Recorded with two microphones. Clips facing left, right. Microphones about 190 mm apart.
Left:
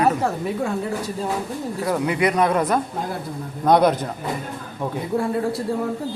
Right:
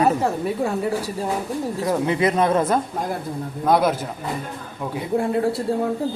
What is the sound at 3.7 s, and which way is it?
Speech, 5° right (ahead or behind).